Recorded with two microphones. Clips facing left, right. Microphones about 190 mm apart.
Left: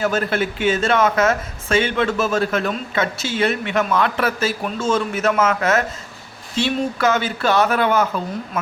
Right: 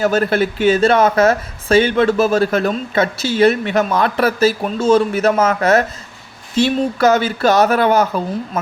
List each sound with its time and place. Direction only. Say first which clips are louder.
0.0 s speech: right 5 dB; 40° right (ahead or behind)